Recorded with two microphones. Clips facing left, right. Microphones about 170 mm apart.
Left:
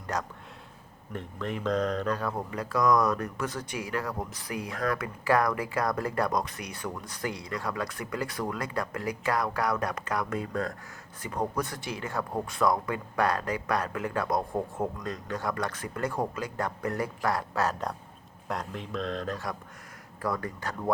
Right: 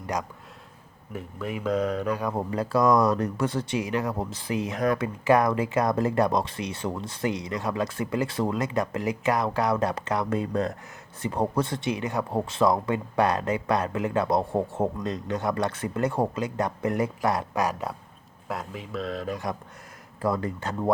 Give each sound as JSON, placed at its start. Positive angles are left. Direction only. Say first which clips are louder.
{"t": 0.1, "sound": "speech", "louder": "right 2 dB", "side_deg": -15}
{"t": 2.3, "sound": "speech", "louder": "right 5 dB", "side_deg": -30}
{"t": 20.2, "sound": "speech", "louder": "right 5 dB", "side_deg": -25}